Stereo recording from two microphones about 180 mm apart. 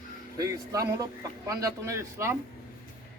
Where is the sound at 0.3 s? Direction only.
20° right (ahead or behind).